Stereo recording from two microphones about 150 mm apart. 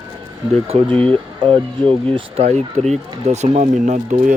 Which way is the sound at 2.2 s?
40° right (ahead or behind).